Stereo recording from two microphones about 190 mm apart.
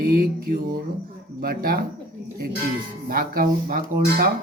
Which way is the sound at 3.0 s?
50° right (ahead or behind).